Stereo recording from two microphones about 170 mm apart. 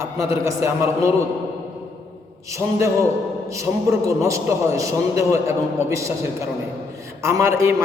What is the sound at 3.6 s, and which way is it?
A man's voice, 15° right (ahead or behind).